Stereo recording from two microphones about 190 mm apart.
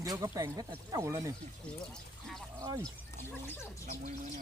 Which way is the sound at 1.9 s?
Centre (ahead or behind).